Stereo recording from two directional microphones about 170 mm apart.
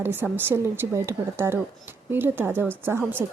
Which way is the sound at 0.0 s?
10° right (ahead or behind).